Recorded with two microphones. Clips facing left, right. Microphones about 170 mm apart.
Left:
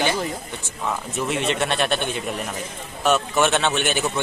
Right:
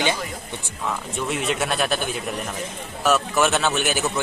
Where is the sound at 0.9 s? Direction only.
Centre (ahead or behind).